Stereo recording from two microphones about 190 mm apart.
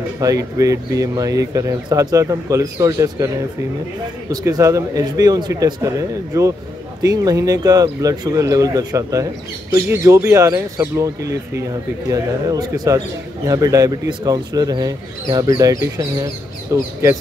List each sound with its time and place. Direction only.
0.2 s speech: 20° right (ahead or behind)
4.3 s speech: 20° right (ahead or behind)